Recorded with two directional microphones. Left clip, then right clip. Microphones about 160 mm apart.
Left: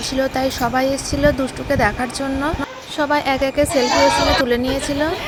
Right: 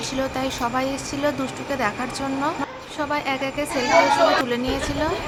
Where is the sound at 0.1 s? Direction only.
30° left (ahead or behind).